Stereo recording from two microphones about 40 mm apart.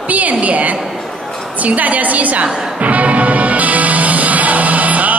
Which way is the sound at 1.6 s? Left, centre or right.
Right.